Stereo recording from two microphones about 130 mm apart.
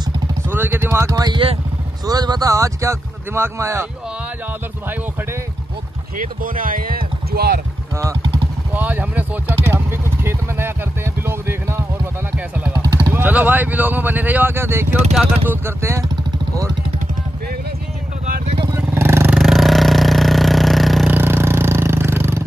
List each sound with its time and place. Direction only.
0.5 s speech: 15° right (ahead or behind)
6.1 s speech: 90° right
7.9 s speech: 25° right (ahead or behind)
8.7 s vehicle: 15° right (ahead or behind)
12.4 s a sound: 10° right (ahead or behind)
12.7 s vehicle: 30° right (ahead or behind)
13.1 s speech: 15° right (ahead or behind)
18.2 s vehicle: 90° right
18.7 s vehicle: 20° right (ahead or behind)
19.3 s a sound: centre (ahead or behind)
21.1 s vehicle: 15° right (ahead or behind)